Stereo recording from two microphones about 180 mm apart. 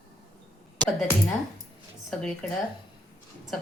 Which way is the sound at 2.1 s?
Centre (ahead or behind).